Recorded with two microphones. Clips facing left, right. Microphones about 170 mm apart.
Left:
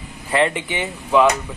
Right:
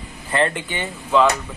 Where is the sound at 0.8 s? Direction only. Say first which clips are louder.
Left 1 dB; 10° left (ahead or behind).